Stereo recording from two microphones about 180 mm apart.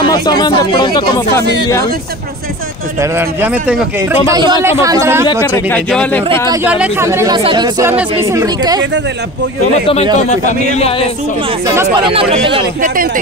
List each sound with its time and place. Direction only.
0.0 s speech: 25° left (ahead or behind)
1.4 s speech: 65° right (ahead or behind)
3.0 s speech: 10° right (ahead or behind)
4.3 s speech: 25° right (ahead or behind)
5.4 s speech: 10° left (ahead or behind)
6.5 s speech: 10° right (ahead or behind)
10.4 s a man's voice: 40° left (ahead or behind)
11.6 s speech: 15° right (ahead or behind)
12.0 s speech: 30° right (ahead or behind)
12.8 s speech: 50° right (ahead or behind)